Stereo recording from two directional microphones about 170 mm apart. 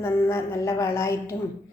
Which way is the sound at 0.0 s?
15° left (ahead or behind).